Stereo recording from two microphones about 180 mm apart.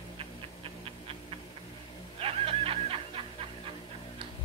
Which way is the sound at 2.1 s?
30° right (ahead or behind).